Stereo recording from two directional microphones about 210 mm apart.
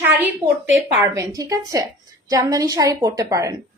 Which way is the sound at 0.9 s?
15° right (ahead or behind).